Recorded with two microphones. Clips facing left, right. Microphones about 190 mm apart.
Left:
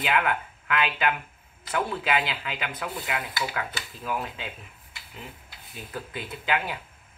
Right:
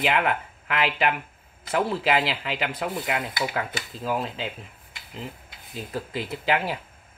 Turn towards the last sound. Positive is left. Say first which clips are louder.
# right 4 dB
turn(degrees=-30)  # may be behind; listen again after turning